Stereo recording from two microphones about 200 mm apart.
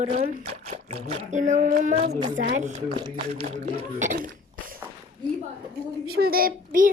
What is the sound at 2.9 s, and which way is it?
Speech, 25° right (ahead or behind).